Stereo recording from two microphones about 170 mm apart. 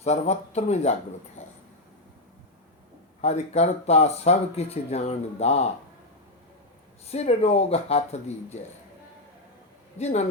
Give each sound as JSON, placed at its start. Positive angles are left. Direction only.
{"t": 0.0, "sound": "speech", "side_deg": 40}
{"t": 3.2, "sound": "speech", "side_deg": 40}
{"t": 7.1, "sound": "speech", "side_deg": 40}
{"t": 10.0, "sound": "speech", "side_deg": 40}